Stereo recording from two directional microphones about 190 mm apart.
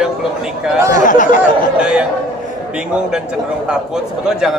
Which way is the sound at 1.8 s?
5° right (ahead or behind).